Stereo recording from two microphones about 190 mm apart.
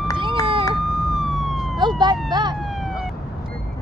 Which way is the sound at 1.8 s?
25° right (ahead or behind).